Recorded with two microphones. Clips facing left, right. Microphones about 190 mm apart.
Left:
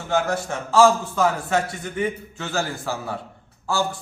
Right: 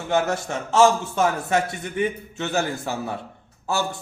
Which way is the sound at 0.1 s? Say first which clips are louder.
Even; 20° right (ahead or behind).